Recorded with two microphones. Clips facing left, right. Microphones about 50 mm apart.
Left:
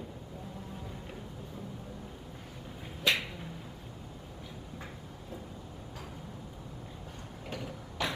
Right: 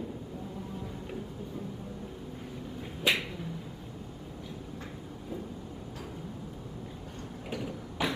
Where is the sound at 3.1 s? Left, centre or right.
Centre.